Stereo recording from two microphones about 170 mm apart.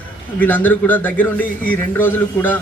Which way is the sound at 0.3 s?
10° left (ahead or behind).